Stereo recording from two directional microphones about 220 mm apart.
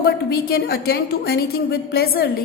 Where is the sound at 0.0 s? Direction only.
45° left (ahead or behind).